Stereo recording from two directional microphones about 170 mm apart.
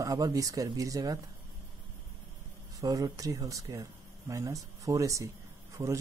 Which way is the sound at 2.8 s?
20° right (ahead or behind).